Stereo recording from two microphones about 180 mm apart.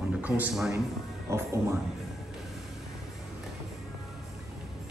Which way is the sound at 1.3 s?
15° right (ahead or behind).